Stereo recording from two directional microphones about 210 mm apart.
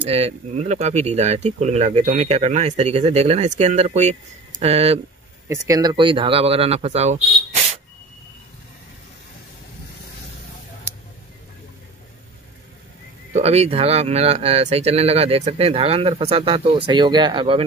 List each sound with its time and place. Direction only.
0.0 s speech: 30° right (ahead or behind)
5.5 s speech: 15° right (ahead or behind)
13.3 s speech: 30° right (ahead or behind)